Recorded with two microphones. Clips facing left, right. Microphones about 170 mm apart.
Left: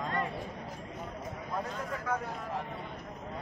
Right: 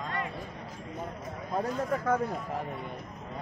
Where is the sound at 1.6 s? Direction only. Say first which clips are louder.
Right 7 dB; 50° right (ahead or behind).